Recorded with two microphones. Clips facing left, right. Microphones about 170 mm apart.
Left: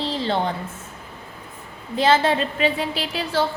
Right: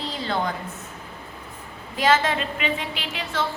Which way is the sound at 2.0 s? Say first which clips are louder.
Left 3 dB; 30° left (ahead or behind).